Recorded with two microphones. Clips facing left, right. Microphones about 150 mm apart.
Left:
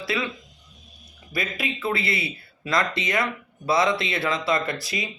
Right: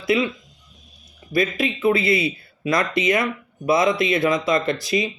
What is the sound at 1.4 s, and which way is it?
Speech, 20° right (ahead or behind).